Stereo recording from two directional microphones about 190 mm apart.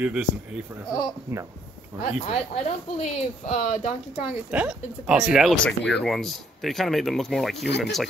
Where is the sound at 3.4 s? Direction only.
40° left (ahead or behind).